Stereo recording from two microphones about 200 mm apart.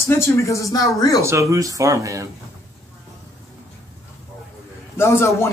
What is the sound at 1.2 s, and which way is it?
Speech, 15° right (ahead or behind).